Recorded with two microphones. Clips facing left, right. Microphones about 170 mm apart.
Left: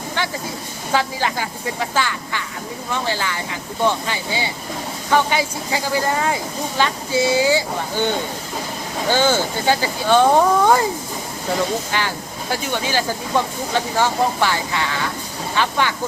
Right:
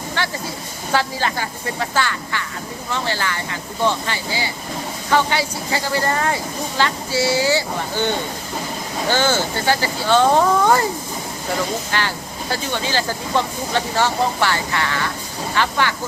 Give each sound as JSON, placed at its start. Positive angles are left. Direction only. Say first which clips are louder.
{"t": 0.2, "sound": "a sound", "louder": "even", "side_deg": 15}
{"t": 0.9, "sound": "speech", "louder": "even", "side_deg": 15}
{"t": 11.9, "sound": "speech", "louder": "even", "side_deg": 15}